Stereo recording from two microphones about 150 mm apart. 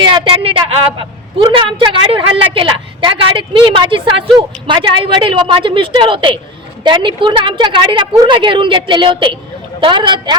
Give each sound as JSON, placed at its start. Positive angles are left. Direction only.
{"t": 0.0, "sound": "a woman's voice", "side_deg": -35}